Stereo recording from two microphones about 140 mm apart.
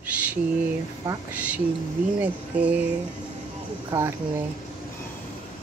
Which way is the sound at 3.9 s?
20° right (ahead or behind).